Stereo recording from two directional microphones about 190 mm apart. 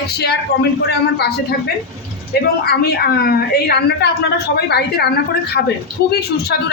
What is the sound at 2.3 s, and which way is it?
A woman's voice, 60° left (ahead or behind).